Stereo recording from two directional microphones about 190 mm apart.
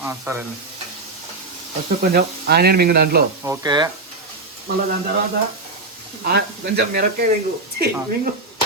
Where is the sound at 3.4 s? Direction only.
15° right (ahead or behind).